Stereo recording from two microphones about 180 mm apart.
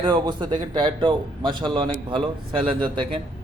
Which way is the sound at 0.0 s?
25° right (ahead or behind).